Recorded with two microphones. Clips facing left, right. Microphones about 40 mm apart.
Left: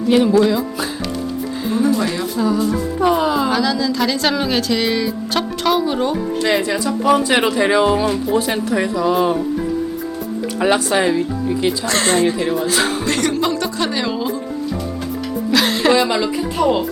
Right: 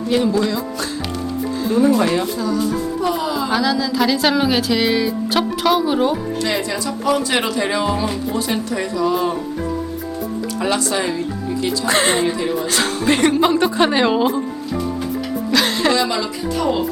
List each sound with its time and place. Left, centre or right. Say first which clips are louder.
0.1 s speech: left 4 dB; centre
2.0 s speech: right 3 dB; right
2.3 s speech: left 2 dB; centre
3.0 s speech: left 7 dB; left
3.5 s speech: even; centre
6.4 s speech: left 7 dB; centre
10.6 s speech: left 5 dB; left
11.9 s speech: right 2 dB; centre
12.4 s speech: left 2 dB; centre
13.1 s speech: right 3 dB; centre
15.5 s speech: left 1 dB; centre
15.9 s speech: left 3 dB; centre